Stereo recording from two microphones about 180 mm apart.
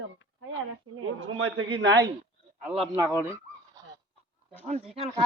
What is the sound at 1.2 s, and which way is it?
Speech, 90° right.